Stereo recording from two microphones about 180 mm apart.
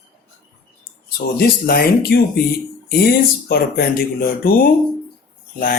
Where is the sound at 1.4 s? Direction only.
55° left (ahead or behind).